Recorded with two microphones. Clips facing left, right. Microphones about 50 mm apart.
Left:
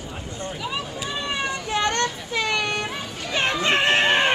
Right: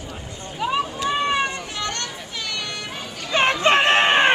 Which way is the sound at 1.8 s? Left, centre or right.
Left.